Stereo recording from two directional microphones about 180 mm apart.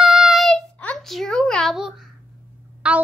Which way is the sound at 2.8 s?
5° right (ahead or behind).